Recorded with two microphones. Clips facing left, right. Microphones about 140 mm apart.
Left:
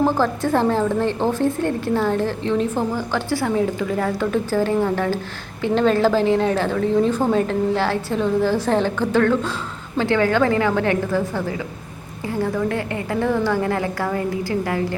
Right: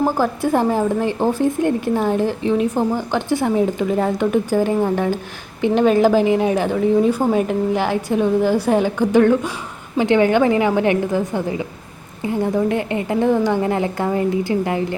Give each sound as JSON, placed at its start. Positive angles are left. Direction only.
{"t": 0.0, "sound": "a woman's voice", "side_deg": -10}